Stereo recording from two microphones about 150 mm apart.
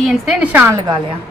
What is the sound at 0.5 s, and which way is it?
Speech, 20° right (ahead or behind).